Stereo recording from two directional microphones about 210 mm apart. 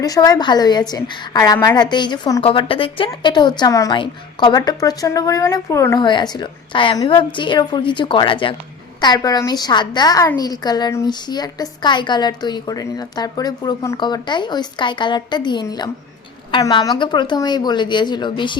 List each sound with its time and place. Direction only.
0.0 s a woman's voice: 15° left (ahead or behind)